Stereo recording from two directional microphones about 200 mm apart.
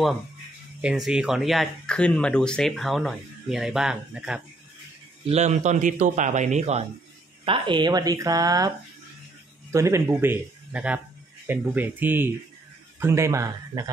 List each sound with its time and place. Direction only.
0.7 s speech: 5° right (ahead or behind)
5.3 s a man's voice: 35° right (ahead or behind); by 13.8 s 15° right (ahead or behind)